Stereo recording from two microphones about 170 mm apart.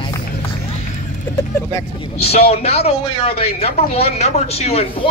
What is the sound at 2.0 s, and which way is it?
A man's voice, 35° left (ahead or behind).